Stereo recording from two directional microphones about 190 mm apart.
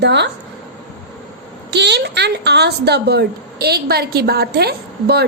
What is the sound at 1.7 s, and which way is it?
A woman's voice, 60° right (ahead or behind).